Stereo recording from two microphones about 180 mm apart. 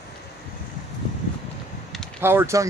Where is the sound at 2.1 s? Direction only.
15° right (ahead or behind).